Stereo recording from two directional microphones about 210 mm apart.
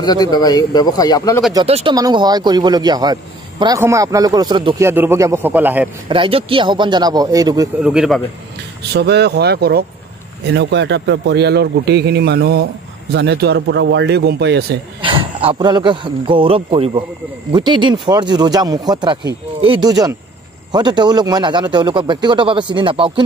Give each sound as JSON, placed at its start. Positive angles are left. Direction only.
{"t": 0.0, "sound": "a man's voice", "side_deg": 20}
{"t": 1.5, "sound": "a man's voice", "side_deg": -25}
{"t": 6.0, "sound": "a man's voice", "side_deg": -25}
{"t": 7.8, "sound": "speech", "side_deg": -5}
{"t": 8.9, "sound": "speech", "side_deg": -55}
{"t": 15.0, "sound": "a man's voice", "side_deg": -25}